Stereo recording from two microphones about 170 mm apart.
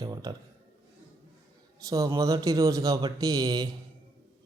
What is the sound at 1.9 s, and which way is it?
Speech, 20° right (ahead or behind).